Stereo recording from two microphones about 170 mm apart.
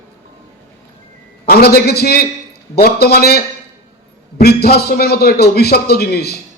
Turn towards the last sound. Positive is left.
turn(degrees=70)  # may be behind; listen again after turning